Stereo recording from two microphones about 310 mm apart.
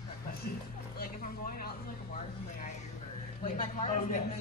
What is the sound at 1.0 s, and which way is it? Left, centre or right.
A man's voice, left.